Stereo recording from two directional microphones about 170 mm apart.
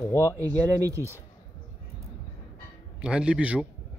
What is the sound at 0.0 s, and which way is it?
Speech, 15° left (ahead or behind).